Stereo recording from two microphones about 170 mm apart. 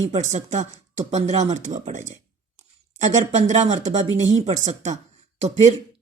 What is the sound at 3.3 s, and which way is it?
Speech, 40° right (ahead or behind).